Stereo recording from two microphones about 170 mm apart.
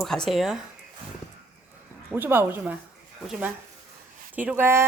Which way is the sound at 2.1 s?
10° right (ahead or behind).